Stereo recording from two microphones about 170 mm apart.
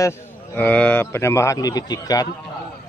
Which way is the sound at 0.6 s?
10° left (ahead or behind).